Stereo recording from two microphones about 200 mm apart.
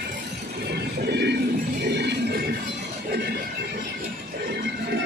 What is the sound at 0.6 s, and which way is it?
Train, 55° right (ahead or behind).